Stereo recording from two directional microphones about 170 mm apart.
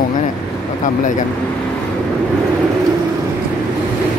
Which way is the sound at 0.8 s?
50° left (ahead or behind).